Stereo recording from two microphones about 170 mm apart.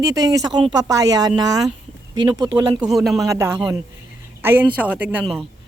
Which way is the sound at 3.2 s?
15° right (ahead or behind).